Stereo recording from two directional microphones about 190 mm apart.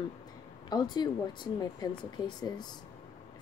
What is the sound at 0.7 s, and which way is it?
Speech, 20° left (ahead or behind).